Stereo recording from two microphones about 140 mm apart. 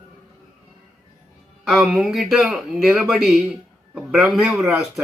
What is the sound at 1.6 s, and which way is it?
Speech, 5° right (ahead or behind).